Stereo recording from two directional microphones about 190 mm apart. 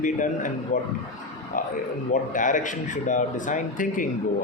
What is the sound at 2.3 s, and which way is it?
A woman's voice, 40° left (ahead or behind).